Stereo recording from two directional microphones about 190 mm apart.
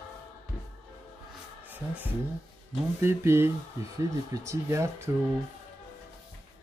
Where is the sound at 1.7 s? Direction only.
10° right (ahead or behind).